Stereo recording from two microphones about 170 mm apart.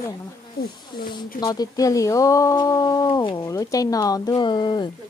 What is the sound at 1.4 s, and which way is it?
Speech, 20° left (ahead or behind).